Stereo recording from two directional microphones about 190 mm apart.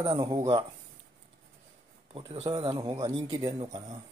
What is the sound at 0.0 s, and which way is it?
Speech, 20° right (ahead or behind).